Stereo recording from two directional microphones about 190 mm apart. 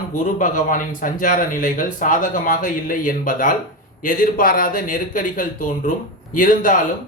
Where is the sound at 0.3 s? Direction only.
45° left (ahead or behind).